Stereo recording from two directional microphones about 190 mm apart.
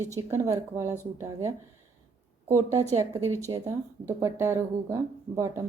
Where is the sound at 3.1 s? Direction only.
15° right (ahead or behind).